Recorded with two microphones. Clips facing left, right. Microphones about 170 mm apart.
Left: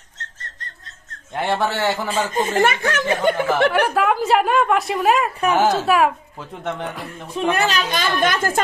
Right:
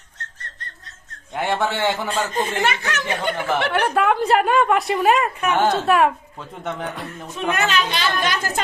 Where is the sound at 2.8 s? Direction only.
50° left (ahead or behind).